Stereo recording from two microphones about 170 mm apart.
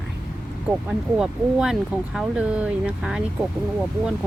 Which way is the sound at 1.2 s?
5° right (ahead or behind).